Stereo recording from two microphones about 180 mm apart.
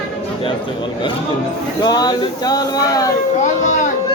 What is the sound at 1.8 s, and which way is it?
Speech, 20° left (ahead or behind).